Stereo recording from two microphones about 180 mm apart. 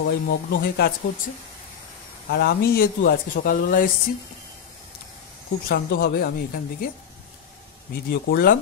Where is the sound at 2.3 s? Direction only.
65° left (ahead or behind).